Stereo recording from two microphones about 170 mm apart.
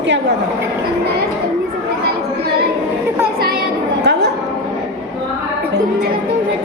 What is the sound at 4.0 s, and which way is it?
Music, 80° right.